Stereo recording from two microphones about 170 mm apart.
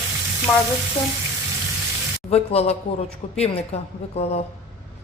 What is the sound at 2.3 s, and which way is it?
A woman's voice, 35° left (ahead or behind).